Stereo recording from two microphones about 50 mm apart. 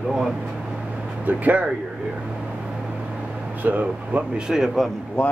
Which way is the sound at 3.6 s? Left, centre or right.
Right.